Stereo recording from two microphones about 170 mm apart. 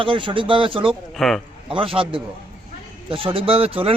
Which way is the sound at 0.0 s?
30° right (ahead or behind).